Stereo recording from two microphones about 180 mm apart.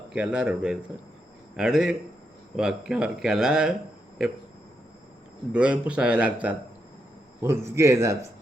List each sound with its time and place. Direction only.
0.1 s speech: 5° right (ahead or behind)
5.5 s a man's voice: 5° right (ahead or behind)